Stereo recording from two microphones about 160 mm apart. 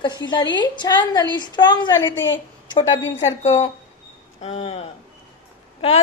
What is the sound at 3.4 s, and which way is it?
A woman's voice, 45° left (ahead or behind).